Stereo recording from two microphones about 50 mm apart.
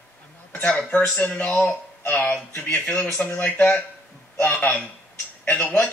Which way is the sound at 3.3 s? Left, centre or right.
Left.